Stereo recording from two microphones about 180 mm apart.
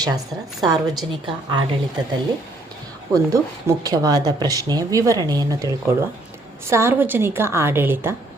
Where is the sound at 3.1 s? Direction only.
20° right (ahead or behind).